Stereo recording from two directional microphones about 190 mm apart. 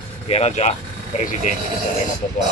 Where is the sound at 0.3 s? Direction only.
35° left (ahead or behind).